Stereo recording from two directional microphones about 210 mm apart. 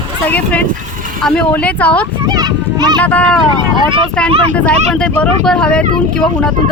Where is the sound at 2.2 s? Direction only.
20° right (ahead or behind).